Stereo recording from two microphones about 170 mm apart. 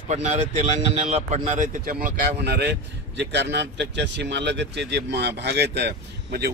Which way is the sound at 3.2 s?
90° right.